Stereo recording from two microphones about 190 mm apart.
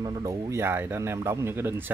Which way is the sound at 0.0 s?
20° right (ahead or behind).